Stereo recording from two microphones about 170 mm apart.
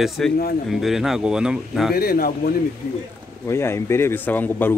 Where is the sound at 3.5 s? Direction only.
15° left (ahead or behind).